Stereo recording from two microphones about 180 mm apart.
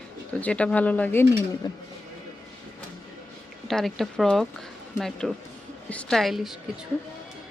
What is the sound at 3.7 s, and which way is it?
A woman's voice, centre (ahead or behind).